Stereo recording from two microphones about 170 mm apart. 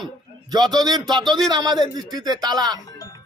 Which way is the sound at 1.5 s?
25° right (ahead or behind).